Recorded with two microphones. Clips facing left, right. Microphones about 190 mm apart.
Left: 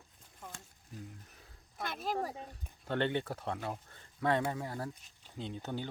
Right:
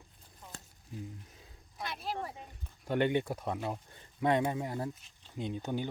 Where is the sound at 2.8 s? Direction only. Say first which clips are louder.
Right 4 dB; 10° right (ahead or behind).